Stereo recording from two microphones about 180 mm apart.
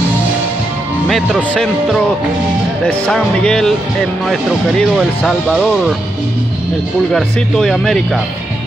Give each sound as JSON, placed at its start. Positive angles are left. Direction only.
{"t": 1.0, "sound": "speech", "side_deg": 0}
{"t": 7.1, "sound": "speech", "side_deg": 5}